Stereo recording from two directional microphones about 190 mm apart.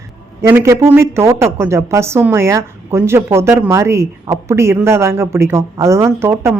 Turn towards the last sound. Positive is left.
turn(degrees=-15)  # may be behind; listen again after turning